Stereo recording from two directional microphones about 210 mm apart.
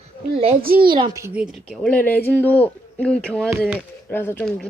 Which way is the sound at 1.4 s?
Centre (ahead or behind).